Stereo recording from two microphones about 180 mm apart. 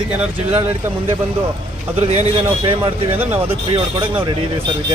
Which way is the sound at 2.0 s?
35° right (ahead or behind).